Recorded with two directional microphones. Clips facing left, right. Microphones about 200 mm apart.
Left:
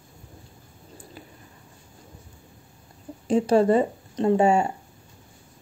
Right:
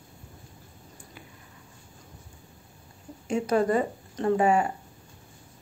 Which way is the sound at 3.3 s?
30° left (ahead or behind).